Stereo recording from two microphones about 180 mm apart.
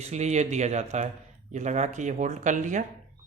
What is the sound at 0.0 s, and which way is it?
Speech, 40° right (ahead or behind).